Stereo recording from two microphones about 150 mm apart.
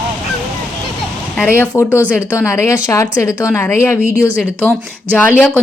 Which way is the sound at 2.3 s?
20° left (ahead or behind).